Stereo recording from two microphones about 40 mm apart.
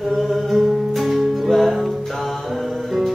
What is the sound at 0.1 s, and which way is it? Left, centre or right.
Music, centre.